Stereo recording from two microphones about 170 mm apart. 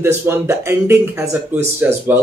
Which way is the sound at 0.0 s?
15° right (ahead or behind).